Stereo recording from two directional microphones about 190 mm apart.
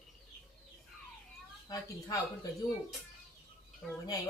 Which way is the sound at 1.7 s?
15° left (ahead or behind).